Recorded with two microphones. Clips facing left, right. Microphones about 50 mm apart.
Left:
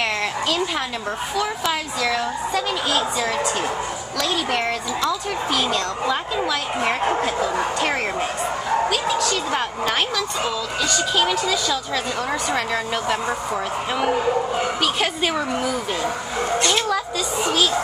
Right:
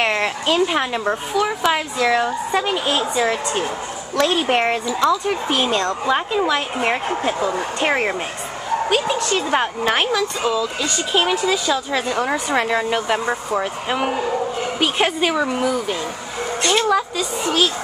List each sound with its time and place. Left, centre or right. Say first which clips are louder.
0.0 s a woman's voice: right 3 dB; right
15.3 s a woman's voice: right 3 dB; centre